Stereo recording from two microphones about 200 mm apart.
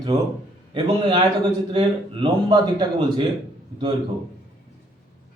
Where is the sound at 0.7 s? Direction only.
25° right (ahead or behind).